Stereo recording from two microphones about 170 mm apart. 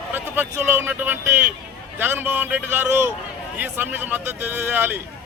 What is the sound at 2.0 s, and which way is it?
Speech, 10° right (ahead or behind).